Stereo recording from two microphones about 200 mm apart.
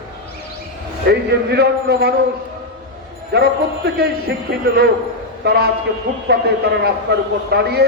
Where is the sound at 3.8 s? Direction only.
55° right (ahead or behind).